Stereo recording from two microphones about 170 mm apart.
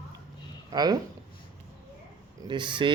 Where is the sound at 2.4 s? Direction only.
25° right (ahead or behind).